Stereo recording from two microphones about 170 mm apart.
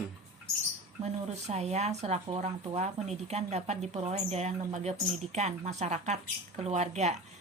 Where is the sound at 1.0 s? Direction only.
40° right (ahead or behind).